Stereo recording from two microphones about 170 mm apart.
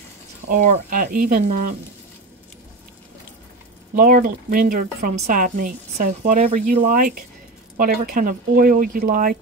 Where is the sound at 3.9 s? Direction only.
55° right (ahead or behind).